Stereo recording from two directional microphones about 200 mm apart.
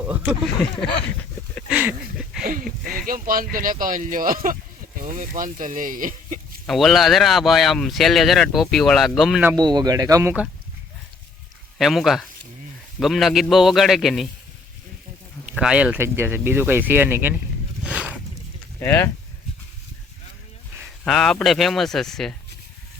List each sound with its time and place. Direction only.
0.0 s speech: 10° right (ahead or behind)
1.7 s a sound: 5° right (ahead or behind)
2.4 s speech: 45° right (ahead or behind)
6.7 s speech: centre (ahead or behind)
9.5 s speech: 20° right (ahead or behind)
11.8 s speech: centre (ahead or behind)
15.4 s speech: 5° right (ahead or behind)
17.8 s a sound: 5° right (ahead or behind)
18.8 s speech: 10° left (ahead or behind)
21.0 s speech: 5° left (ahead or behind)